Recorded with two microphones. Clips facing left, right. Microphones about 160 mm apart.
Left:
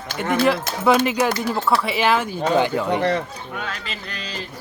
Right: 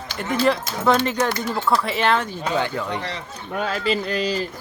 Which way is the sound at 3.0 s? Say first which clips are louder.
Left 10 dB; 55° left (ahead or behind).